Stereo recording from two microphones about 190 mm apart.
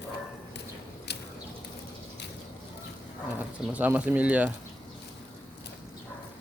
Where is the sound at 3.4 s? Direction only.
5° right (ahead or behind).